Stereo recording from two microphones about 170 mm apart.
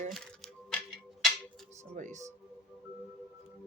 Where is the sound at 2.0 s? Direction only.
45° right (ahead or behind).